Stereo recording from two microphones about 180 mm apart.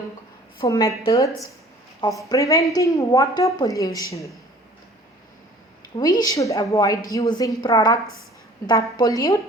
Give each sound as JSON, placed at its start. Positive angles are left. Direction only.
{"t": 0.6, "sound": "a woman's voice", "side_deg": 15}
{"t": 6.0, "sound": "a woman's voice", "side_deg": 20}